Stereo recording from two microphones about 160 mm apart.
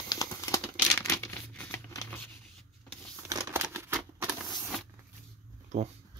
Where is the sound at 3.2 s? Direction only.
20° right (ahead or behind).